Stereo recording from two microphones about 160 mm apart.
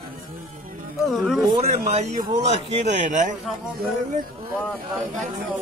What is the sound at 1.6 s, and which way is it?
A man's voice, 45° right (ahead or behind).